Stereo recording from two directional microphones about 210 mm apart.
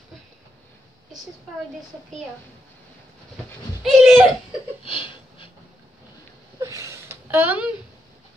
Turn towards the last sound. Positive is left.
turn(degrees=-5)  # may be behind; listen again after turning